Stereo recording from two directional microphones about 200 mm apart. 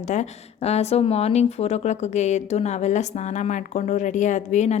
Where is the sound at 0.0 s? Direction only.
35° left (ahead or behind).